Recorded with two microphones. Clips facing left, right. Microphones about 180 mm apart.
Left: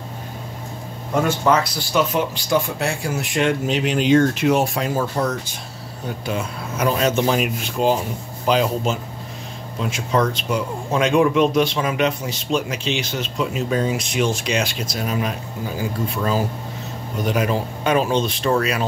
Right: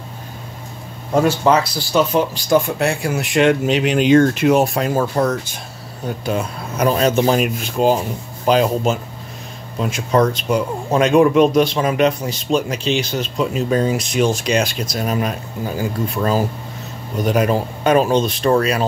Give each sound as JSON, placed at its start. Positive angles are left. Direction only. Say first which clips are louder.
{"t": 1.2, "sound": "speech", "louder": "right 2 dB", "side_deg": -30}
{"t": 2.8, "sound": "speech", "louder": "right 4 dB", "side_deg": -65}
{"t": 6.2, "sound": "speech", "louder": "right 4 dB", "side_deg": -40}
{"t": 17.2, "sound": "speech", "louder": "right 4 dB", "side_deg": -45}